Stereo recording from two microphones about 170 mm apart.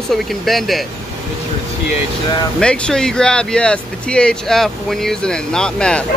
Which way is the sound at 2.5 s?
5° left (ahead or behind).